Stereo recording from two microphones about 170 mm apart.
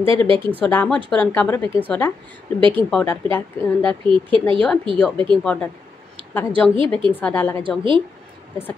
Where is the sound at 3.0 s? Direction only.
15° left (ahead or behind).